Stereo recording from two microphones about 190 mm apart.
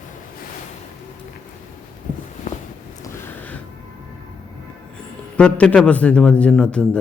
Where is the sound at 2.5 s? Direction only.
40° left (ahead or behind).